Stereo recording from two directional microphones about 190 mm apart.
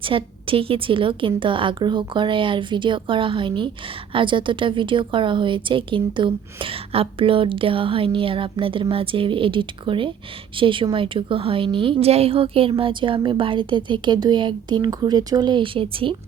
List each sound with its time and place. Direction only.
0.0 s a woman's voice: 25° right (ahead or behind)